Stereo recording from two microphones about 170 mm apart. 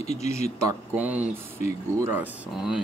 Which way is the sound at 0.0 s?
40° left (ahead or behind).